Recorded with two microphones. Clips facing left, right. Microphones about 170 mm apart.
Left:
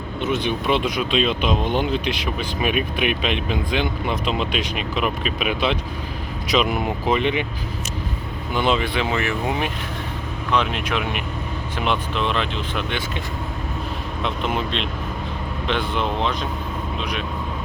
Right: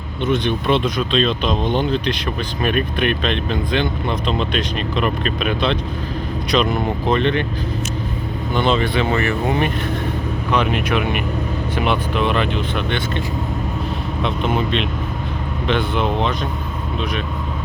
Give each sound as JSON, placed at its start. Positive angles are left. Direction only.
{"t": 0.2, "sound": "speech", "side_deg": 5}
{"t": 8.5, "sound": "speech", "side_deg": 5}
{"t": 14.3, "sound": "speech", "side_deg": 0}